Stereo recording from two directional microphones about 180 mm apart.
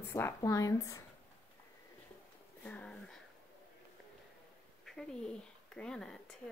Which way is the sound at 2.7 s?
5° left (ahead or behind).